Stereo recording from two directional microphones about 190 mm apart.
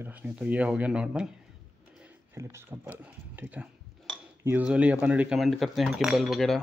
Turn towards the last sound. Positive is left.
turn(degrees=0)  # may be behind; listen again after turning